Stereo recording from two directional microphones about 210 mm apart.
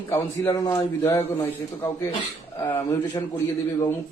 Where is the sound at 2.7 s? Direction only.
20° left (ahead or behind).